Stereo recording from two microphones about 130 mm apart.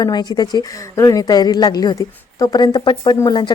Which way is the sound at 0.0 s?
30° left (ahead or behind).